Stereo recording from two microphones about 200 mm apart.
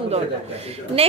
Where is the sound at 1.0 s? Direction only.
30° right (ahead or behind).